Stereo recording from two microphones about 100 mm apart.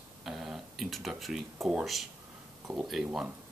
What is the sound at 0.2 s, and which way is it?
Speech, 5° right (ahead or behind).